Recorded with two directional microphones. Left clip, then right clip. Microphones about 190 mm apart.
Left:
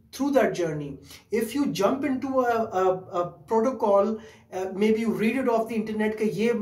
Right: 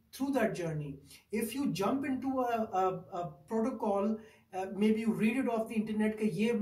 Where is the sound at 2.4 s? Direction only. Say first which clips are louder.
Left 8 dB; 5° left (ahead or behind).